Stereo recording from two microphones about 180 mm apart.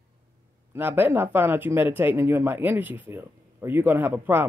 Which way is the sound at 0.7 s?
10° right (ahead or behind).